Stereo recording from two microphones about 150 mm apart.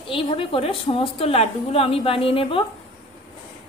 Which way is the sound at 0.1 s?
35° left (ahead or behind).